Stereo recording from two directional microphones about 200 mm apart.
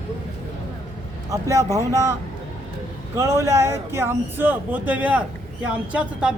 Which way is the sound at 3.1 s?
15° right (ahead or behind).